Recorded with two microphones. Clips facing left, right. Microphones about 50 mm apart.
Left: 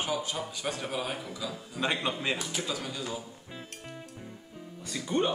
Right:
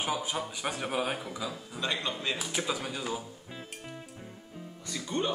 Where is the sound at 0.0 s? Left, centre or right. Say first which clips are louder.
Even; centre.